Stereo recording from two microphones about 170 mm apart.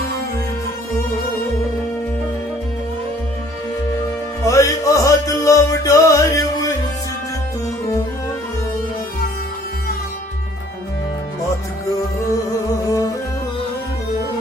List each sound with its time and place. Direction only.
4.4 s music: 20° left (ahead or behind)
12.8 s music: 20° left (ahead or behind)